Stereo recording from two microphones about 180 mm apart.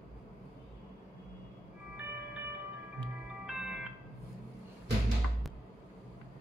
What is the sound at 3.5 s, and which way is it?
Music, 5° right (ahead or behind).